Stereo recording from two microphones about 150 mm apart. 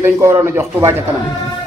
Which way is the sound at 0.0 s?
15° right (ahead or behind).